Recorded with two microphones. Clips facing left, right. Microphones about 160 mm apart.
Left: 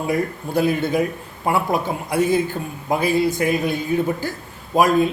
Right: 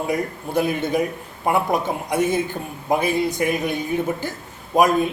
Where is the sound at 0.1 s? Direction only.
20° right (ahead or behind).